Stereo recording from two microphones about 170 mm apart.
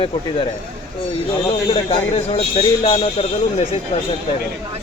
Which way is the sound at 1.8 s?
35° left (ahead or behind).